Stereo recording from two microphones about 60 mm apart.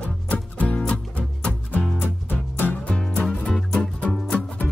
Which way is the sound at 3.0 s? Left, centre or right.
Centre.